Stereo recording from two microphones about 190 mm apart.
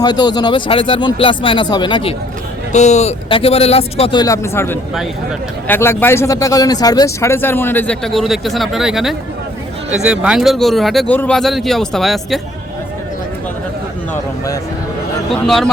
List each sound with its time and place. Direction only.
0.0 s speech: 20° left (ahead or behind)
2.7 s a man's voice: 35° left (ahead or behind); by 12.4 s centre (ahead or behind)
14.1 s speech: 20° left (ahead or behind)
15.3 s a man's voice: centre (ahead or behind)